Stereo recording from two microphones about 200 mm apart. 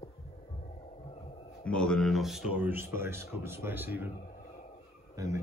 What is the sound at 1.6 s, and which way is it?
Speech, 5° left (ahead or behind).